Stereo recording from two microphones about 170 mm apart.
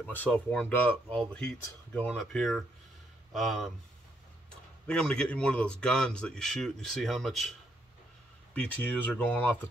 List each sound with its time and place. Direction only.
0.0 s a man's voice: 10° left (ahead or behind)
4.8 s a man's voice: 5° left (ahead or behind)
8.5 s speech: 10° left (ahead or behind)